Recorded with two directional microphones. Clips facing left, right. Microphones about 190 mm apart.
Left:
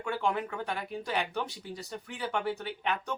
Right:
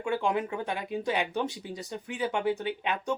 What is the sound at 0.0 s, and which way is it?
Speech, 15° right (ahead or behind).